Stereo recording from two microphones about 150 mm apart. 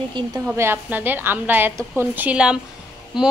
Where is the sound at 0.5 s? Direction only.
15° right (ahead or behind).